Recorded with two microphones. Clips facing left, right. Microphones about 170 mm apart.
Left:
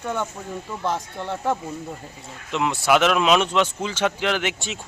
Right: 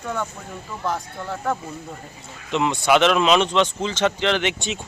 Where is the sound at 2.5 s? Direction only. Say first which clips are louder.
Right 1 dB; 5° left (ahead or behind).